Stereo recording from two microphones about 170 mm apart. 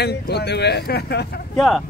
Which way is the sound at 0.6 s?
75° left (ahead or behind).